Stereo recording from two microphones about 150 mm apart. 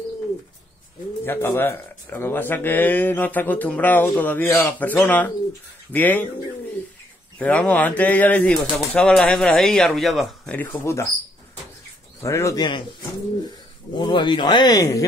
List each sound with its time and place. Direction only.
1.2 s speech: 15° left (ahead or behind)
7.3 s speech: 10° left (ahead or behind)
10.7 s speech: 20° left (ahead or behind)
12.2 s speech: 20° left (ahead or behind)
13.9 s speech: 30° left (ahead or behind)